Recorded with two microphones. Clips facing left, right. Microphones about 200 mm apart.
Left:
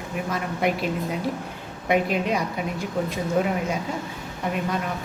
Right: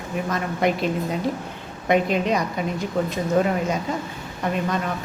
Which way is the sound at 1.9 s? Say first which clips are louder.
Right 2 dB; 5° left (ahead or behind).